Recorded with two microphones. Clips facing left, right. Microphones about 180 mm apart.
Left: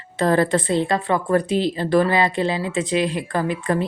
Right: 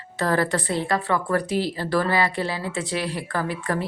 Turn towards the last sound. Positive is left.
turn(degrees=20)  # may be behind; listen again after turning